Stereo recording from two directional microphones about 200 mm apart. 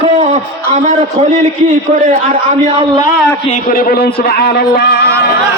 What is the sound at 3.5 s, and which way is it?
A man's voice, 40° left (ahead or behind).